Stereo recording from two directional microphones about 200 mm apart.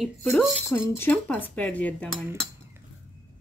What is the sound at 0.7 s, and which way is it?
A woman's voice, 10° left (ahead or behind).